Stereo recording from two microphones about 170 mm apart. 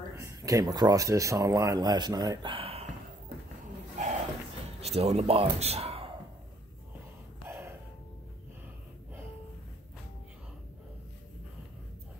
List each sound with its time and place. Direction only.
0.2 s speech: 20° right (ahead or behind); by 2.9 s 35° right (ahead or behind)
4.0 s a sound: 45° right (ahead or behind)
4.7 s a man's voice: 35° right (ahead or behind)